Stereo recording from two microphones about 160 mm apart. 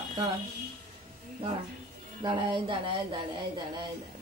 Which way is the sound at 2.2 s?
30° right (ahead or behind).